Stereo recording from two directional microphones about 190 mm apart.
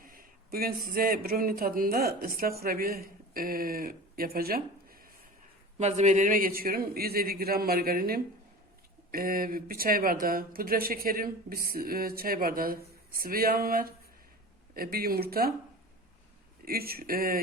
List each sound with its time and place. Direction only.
0.0 s speech: 45° right (ahead or behind)
5.7 s speech: 35° right (ahead or behind); by 15.5 s 50° right (ahead or behind)
16.6 s speech: 55° right (ahead or behind)